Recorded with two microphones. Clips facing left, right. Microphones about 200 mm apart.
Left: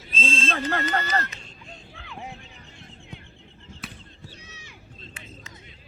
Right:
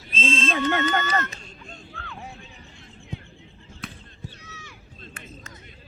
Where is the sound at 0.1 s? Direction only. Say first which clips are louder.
Right 3 dB; 35° left (ahead or behind).